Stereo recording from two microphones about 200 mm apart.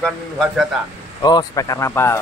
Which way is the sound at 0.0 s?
Centre (ahead or behind).